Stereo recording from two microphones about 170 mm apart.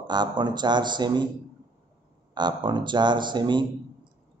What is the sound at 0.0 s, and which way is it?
A man's voice, 25° right (ahead or behind).